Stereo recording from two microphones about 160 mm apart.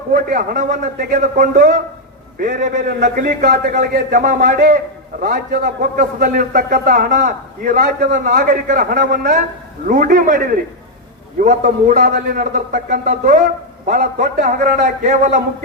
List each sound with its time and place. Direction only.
0.1 s a man's voice: 60° right (ahead or behind)
3.0 s a man's voice: 60° right (ahead or behind)